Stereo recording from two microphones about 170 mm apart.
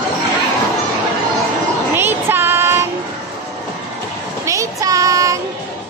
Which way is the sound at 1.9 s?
15° right (ahead or behind).